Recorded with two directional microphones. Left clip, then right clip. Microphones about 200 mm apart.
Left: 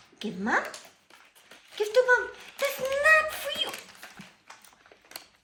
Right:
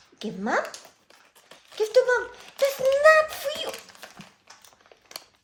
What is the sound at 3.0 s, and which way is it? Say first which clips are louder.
Beatboxing: right 3 dB; 65° right (ahead or behind).